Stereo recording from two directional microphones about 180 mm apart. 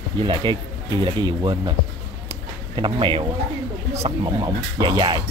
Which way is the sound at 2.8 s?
25° right (ahead or behind).